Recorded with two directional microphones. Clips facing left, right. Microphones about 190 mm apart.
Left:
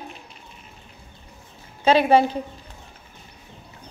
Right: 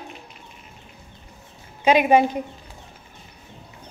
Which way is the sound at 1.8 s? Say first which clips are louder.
Even; 15° right (ahead or behind).